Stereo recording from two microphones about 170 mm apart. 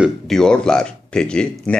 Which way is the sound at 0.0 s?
5° left (ahead or behind).